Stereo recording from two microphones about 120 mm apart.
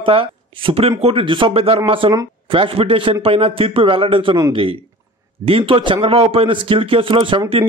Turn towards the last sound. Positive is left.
turn(degrees=-45)  # may be behind; listen again after turning